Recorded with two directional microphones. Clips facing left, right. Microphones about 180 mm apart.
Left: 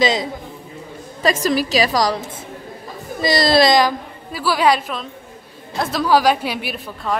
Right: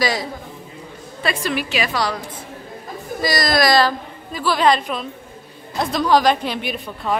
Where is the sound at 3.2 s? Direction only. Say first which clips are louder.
Left 4 dB; 25° left (ahead or behind).